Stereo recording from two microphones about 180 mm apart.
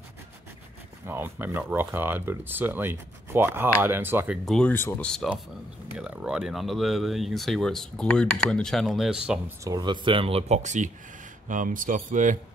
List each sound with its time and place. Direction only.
1.0 s speech: 10° right (ahead or behind)
4.5 s speech: 5° left (ahead or behind)
5.9 s speech: 5° right (ahead or behind)
9.7 s speech: 25° right (ahead or behind); by 12.4 s 45° right (ahead or behind)